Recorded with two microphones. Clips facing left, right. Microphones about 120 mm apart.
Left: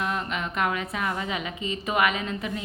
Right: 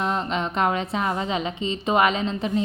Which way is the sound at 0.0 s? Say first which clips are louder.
Right 4 dB; 30° right (ahead or behind).